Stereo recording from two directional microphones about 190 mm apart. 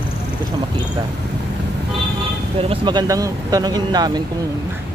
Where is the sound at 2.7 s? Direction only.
25° right (ahead or behind).